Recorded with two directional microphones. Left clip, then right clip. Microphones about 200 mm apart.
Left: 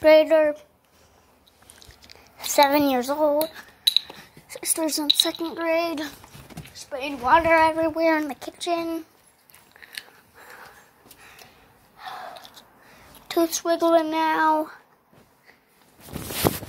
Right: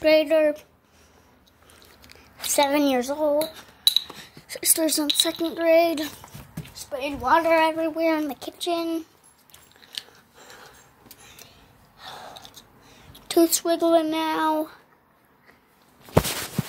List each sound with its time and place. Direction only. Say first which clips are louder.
0.0 s speech: left 3 dB; 5° left (ahead or behind)
2.0 s speech: right 2 dB; 5° right (ahead or behind)
4.1 s a sound: right 2 dB; 20° right (ahead or behind)
5.5 s a child's voice: right 5 dB; 20° right (ahead or behind)
6.6 s a woman's voice: right 1 dB; centre (ahead or behind)
9.8 s a sound: right 2 dB; 5° left (ahead or behind)
12.0 s gasp: left 3 dB; centre (ahead or behind)
13.3 s a woman's voice: right 2 dB; 15° right (ahead or behind)